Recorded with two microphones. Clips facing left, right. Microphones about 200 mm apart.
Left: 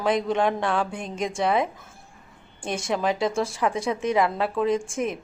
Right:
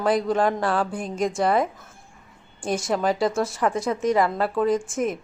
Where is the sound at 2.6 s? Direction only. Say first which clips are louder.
Right 4 dB; 25° left (ahead or behind).